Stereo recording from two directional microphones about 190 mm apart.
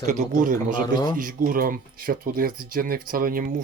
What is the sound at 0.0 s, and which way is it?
Speech, 45° right (ahead or behind).